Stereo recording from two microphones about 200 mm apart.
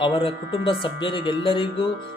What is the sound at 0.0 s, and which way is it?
Speech, 25° left (ahead or behind).